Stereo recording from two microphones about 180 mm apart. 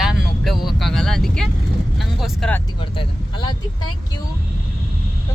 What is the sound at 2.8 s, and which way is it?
Speech, 25° left (ahead or behind).